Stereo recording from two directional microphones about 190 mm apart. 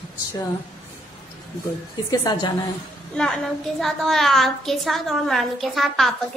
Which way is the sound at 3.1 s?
5° left (ahead or behind).